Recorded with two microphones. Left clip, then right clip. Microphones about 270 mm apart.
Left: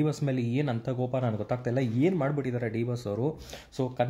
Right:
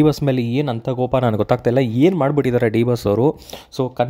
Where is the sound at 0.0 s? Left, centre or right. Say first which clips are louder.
Right 13 dB; right.